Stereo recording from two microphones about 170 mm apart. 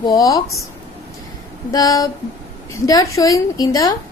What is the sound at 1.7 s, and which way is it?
A woman's voice, 20° left (ahead or behind).